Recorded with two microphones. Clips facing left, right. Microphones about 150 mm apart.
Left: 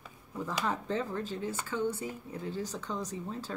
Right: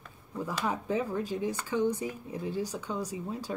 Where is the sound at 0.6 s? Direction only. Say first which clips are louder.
Right 2 dB; 10° right (ahead or behind).